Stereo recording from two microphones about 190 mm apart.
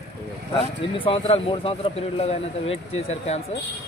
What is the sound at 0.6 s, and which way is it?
Speech, 30° left (ahead or behind).